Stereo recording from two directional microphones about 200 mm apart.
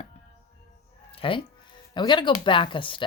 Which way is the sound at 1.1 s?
25° left (ahead or behind).